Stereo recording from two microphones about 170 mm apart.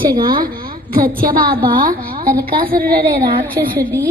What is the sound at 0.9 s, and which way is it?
A woman's voice, 55° right (ahead or behind).